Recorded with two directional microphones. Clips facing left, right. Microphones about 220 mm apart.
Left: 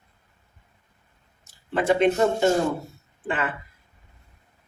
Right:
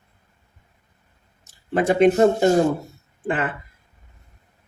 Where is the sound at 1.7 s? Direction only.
40° right (ahead or behind).